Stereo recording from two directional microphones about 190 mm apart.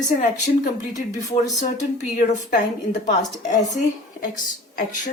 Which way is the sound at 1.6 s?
40° left (ahead or behind).